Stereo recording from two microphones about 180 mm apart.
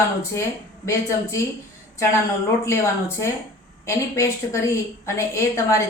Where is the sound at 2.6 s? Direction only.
15° left (ahead or behind).